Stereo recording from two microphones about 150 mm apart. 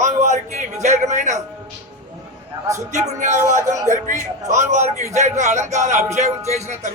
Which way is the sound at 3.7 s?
20° right (ahead or behind).